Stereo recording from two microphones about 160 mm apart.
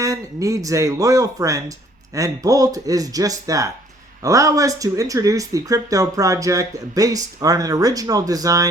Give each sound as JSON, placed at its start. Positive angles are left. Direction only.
{"t": 0.0, "sound": "speech", "side_deg": -20}